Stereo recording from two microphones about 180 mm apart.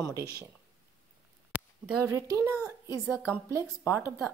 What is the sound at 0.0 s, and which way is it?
Speech, 20° right (ahead or behind).